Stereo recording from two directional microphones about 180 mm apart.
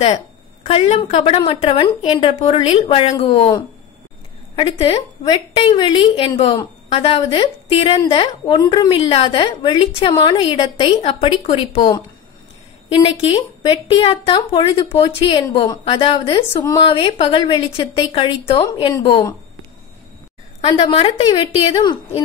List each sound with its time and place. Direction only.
0.7 s a woman's voice: 35° left (ahead or behind)
4.6 s a woman's voice: 30° left (ahead or behind)
12.9 s a woman's voice: 30° left (ahead or behind)
20.6 s a woman's voice: 30° left (ahead or behind)